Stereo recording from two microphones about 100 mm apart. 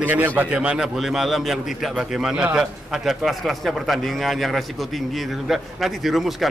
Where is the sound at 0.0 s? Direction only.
15° right (ahead or behind).